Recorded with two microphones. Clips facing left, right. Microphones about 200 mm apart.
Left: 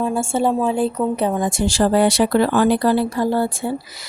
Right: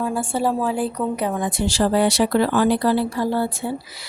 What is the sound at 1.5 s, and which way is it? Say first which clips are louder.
Speech: left 3 dB; 45° left (ahead or behind).